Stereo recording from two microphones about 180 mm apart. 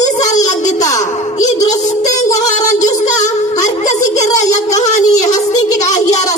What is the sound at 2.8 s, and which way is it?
Music, 20° left (ahead or behind).